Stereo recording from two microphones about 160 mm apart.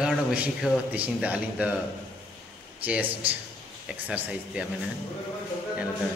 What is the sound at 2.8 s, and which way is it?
A man's voice, 10° right (ahead or behind).